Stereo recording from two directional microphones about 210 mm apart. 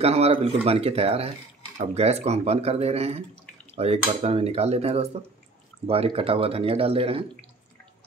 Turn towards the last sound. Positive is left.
turn(degrees=-25)  # may be behind; listen again after turning